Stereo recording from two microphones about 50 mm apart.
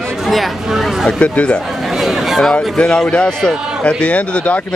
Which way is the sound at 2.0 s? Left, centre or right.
Centre.